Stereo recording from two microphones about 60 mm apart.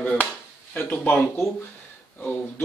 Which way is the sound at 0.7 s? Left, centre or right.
Left.